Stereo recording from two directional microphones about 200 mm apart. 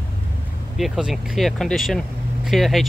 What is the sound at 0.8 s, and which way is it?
Speech, 5° right (ahead or behind).